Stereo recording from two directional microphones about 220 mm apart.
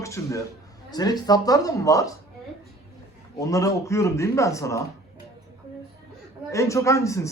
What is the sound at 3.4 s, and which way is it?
Speech, 15° left (ahead or behind).